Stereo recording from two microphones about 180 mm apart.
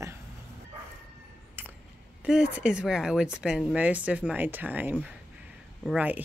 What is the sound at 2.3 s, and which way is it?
Speech, 5° right (ahead or behind).